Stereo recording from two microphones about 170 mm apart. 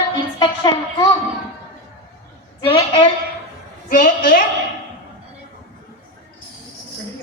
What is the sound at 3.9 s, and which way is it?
Speech, 50° left (ahead or behind).